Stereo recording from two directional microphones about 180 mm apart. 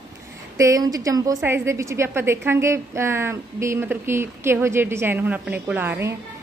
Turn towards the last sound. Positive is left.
turn(degrees=-10)  # may be behind; listen again after turning